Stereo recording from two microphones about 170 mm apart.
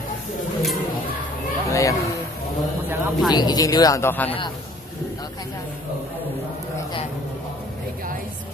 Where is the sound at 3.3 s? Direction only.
25° left (ahead or behind).